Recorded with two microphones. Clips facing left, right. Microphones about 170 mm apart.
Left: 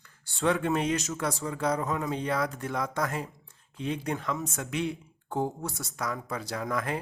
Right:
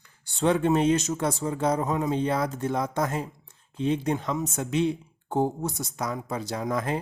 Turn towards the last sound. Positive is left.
turn(degrees=-25)  # may be behind; listen again after turning